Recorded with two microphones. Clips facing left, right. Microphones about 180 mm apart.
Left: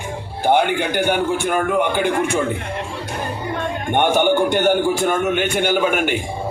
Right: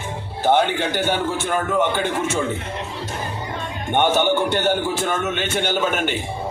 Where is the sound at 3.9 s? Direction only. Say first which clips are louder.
Left 2 dB; 15° left (ahead or behind).